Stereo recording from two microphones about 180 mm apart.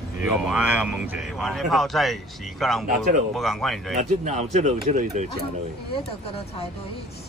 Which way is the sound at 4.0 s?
40° right (ahead or behind).